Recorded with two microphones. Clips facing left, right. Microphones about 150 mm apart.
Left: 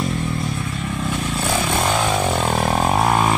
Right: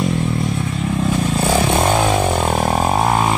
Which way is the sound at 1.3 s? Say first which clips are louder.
Right 5 dB; 30° right (ahead or behind).